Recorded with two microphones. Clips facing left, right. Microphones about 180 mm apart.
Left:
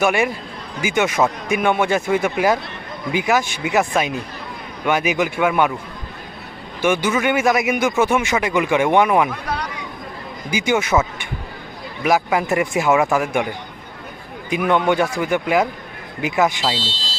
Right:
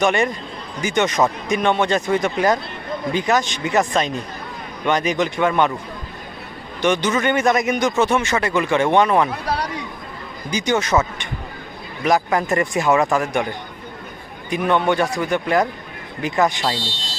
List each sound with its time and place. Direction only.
0.0 s speech: 10° left (ahead or behind)
6.8 s speech: 10° left (ahead or behind)
9.5 s a sound: 35° right (ahead or behind)
10.5 s speech: 10° left (ahead or behind)
14.7 s speech: 15° left (ahead or behind)
16.7 s speech: 25° left (ahead or behind)